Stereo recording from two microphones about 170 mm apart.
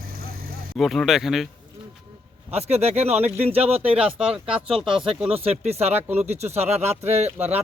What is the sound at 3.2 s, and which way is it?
Speech, 10° right (ahead or behind).